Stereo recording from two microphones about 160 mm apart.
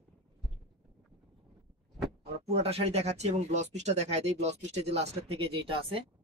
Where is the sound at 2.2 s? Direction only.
40° right (ahead or behind).